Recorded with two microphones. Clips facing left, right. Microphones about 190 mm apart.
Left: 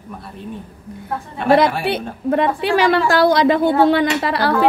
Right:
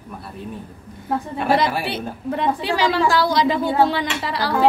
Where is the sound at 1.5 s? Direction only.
60° left (ahead or behind).